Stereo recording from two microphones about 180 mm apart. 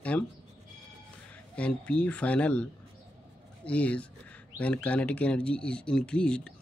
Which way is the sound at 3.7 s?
5° left (ahead or behind).